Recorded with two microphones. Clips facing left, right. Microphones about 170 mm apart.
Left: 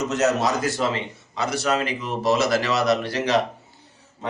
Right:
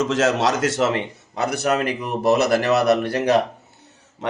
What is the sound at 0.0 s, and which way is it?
A man's voice, 90° right.